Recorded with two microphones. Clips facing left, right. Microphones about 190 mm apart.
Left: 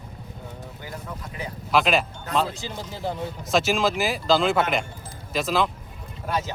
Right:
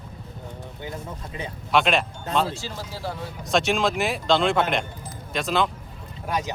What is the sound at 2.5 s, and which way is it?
Speech, 20° left (ahead or behind).